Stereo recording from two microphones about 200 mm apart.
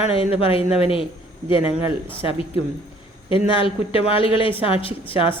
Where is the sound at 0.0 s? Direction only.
30° left (ahead or behind).